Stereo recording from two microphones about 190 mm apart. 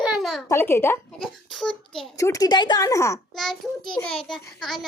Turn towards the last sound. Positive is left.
turn(degrees=0)  # may be behind; listen again after turning